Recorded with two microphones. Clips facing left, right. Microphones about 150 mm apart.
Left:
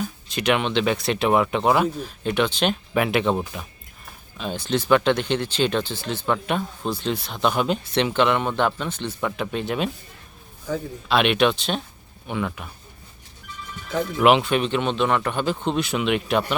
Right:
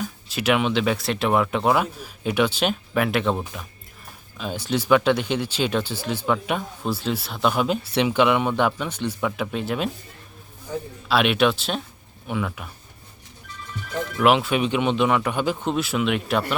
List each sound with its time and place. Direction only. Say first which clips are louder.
0.0 s speech: left 1 dB; 5° right (ahead or behind)
10.7 s a man's voice: left 3 dB; 90° left
11.1 s speech: even; 5° right (ahead or behind)
14.2 s speech: left 1 dB; centre (ahead or behind)